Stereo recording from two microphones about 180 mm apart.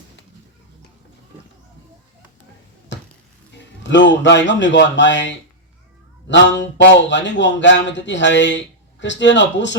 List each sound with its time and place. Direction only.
2.9 s bouncing: 85° left
3.8 s speech: 80° left